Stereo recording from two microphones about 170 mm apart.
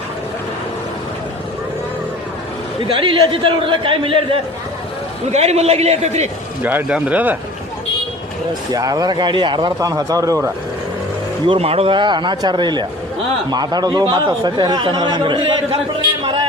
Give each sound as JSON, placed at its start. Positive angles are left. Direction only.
{"t": 2.8, "sound": "a man's voice", "side_deg": -30}
{"t": 6.6, "sound": "speech", "side_deg": -10}
{"t": 8.7, "sound": "a man's voice", "side_deg": -20}
{"t": 11.4, "sound": "a man's voice", "side_deg": -35}